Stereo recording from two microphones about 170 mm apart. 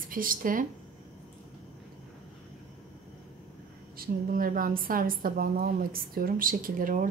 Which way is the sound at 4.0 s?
55° right (ahead or behind).